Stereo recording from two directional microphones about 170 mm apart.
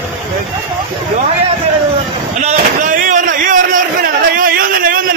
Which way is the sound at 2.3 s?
45° right (ahead or behind).